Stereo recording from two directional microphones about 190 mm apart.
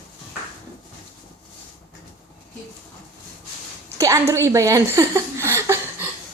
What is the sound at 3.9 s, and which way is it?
Speech, 15° right (ahead or behind).